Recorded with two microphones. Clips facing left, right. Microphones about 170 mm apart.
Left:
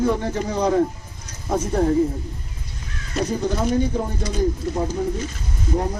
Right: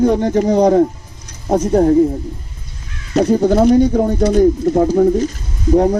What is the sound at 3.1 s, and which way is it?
Speech, 60° right (ahead or behind).